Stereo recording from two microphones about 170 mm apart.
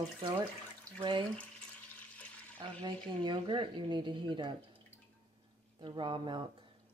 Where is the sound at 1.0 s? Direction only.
30° right (ahead or behind).